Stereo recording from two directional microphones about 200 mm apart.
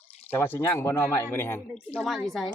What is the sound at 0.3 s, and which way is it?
A man's voice, 10° left (ahead or behind).